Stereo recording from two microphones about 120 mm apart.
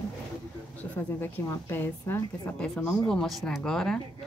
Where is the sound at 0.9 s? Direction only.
20° left (ahead or behind).